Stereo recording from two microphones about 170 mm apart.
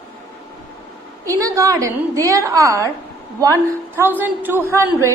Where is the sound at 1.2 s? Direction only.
20° right (ahead or behind).